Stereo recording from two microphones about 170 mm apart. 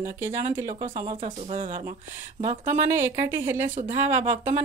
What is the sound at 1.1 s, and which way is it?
Speech, 35° right (ahead or behind).